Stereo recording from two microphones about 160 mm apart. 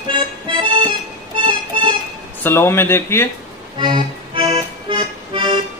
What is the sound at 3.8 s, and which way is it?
Accordion, 30° right (ahead or behind).